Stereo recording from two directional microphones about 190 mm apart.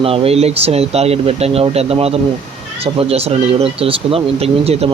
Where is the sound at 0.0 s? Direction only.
30° right (ahead or behind).